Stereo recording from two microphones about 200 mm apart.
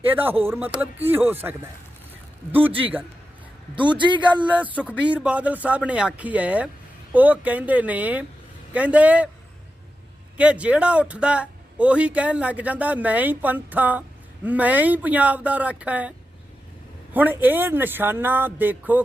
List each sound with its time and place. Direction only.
0.1 s speech: 10° right (ahead or behind)
3.8 s a man's voice: 25° right (ahead or behind)
4.4 s speech: 5° right (ahead or behind)
10.3 s speech: 5° right (ahead or behind)